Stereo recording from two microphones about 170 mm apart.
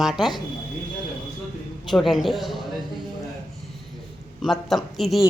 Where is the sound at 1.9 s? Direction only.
Centre (ahead or behind).